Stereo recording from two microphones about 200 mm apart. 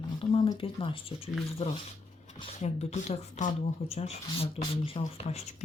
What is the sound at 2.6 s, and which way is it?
Speech, 35° left (ahead or behind).